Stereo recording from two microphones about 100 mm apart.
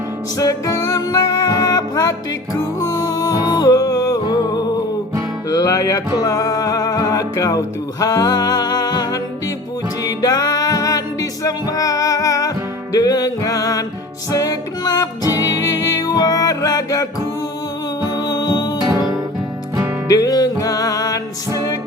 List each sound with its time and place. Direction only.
0.3 s music: 35° left (ahead or behind)
20.1 s music: 35° left (ahead or behind)